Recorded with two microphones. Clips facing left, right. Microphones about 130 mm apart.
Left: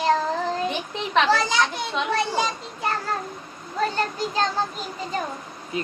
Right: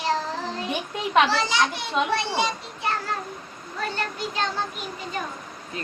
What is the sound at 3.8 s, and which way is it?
Child singing, 40° left (ahead or behind).